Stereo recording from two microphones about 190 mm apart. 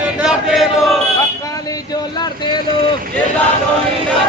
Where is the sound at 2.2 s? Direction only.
25° left (ahead or behind).